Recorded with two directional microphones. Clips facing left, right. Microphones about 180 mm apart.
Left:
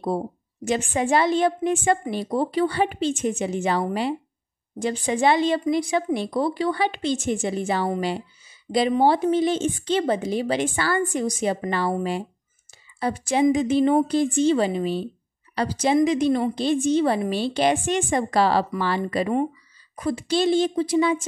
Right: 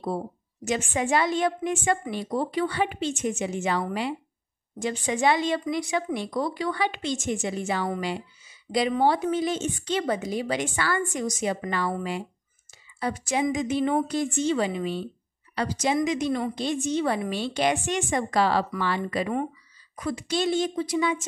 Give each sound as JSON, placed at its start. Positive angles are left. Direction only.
{"t": 0.7, "sound": "a woman's voice", "side_deg": 35}